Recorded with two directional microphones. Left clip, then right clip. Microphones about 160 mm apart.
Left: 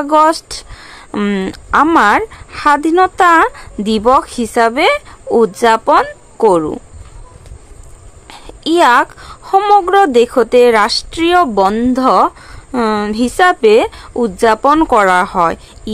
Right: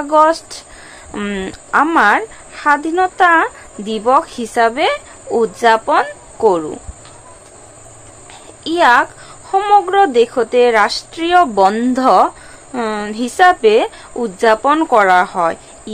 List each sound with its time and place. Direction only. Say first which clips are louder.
0.0 s speech: left 1 dB; 40° left (ahead or behind)
8.3 s speech: left 6 dB; 40° left (ahead or behind)
11.3 s speech: right 1 dB; 35° left (ahead or behind)